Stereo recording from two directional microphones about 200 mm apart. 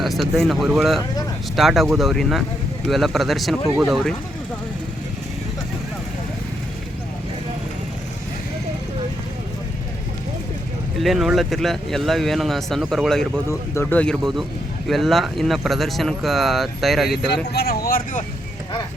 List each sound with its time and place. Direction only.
0.0 s speech: centre (ahead or behind)
11.0 s speech: centre (ahead or behind)
17.2 s speech: 55° left (ahead or behind)